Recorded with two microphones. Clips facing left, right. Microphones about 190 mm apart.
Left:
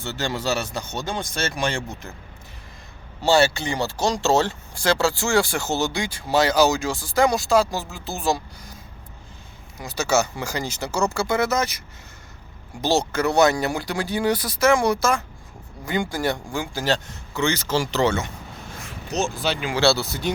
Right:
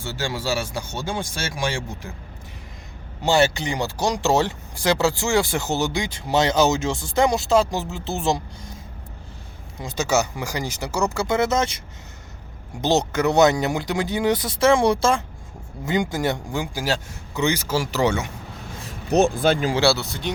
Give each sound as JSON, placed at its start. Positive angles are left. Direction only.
{"t": 0.0, "sound": "speech", "side_deg": -10}
{"t": 3.2, "sound": "speech", "side_deg": -15}
{"t": 9.7, "sound": "speech", "side_deg": -25}
{"t": 12.8, "sound": "speech", "side_deg": -20}
{"t": 19.1, "sound": "speech", "side_deg": -55}
{"t": 20.0, "sound": "speech", "side_deg": 5}